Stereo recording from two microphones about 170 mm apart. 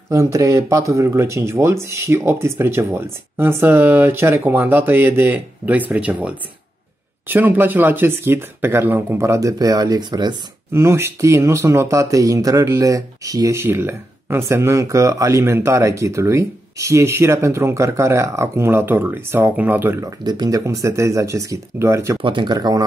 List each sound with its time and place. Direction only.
0.1 s speech: 20° right (ahead or behind)
22.2 s speech: 25° right (ahead or behind)